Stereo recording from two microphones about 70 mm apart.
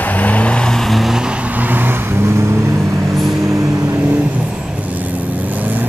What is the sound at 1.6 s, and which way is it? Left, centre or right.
Vehicle, right.